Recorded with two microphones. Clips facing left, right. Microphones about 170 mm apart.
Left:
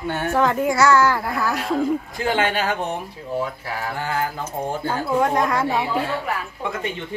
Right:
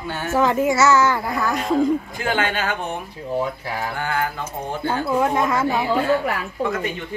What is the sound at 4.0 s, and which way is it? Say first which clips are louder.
Mantra: even; 30° left (ahead or behind).